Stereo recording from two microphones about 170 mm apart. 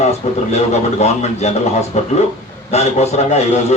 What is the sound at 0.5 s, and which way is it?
Speech, 40° left (ahead or behind).